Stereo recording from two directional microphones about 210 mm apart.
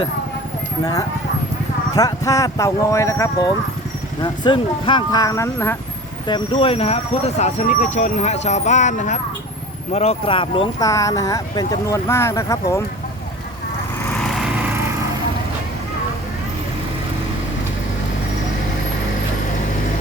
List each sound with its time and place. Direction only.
2.0 s speech: 15° left (ahead or behind)
6.2 s speech: 25° left (ahead or behind)
14.1 s lawn mower: centre (ahead or behind)